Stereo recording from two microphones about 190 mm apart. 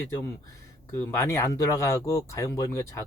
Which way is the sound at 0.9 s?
15° left (ahead or behind).